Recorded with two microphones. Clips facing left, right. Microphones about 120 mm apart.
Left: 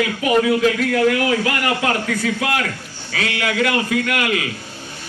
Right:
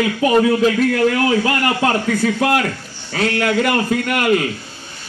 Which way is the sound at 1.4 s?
35° right (ahead or behind).